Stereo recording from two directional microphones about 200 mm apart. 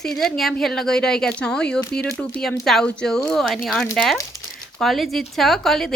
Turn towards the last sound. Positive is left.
turn(degrees=0)  # may be behind; listen again after turning